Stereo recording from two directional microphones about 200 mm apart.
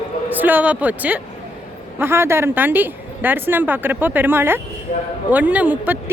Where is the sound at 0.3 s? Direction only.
10° right (ahead or behind).